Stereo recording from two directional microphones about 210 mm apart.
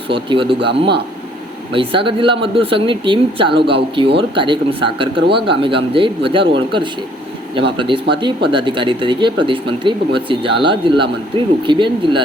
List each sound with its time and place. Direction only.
0.1 s speech: 25° right (ahead or behind)
1.7 s speech: 25° right (ahead or behind)